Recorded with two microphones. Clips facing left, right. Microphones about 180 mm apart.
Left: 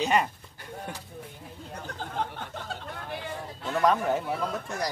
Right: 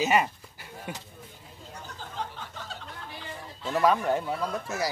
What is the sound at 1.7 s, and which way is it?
Chatter, 55° left (ahead or behind).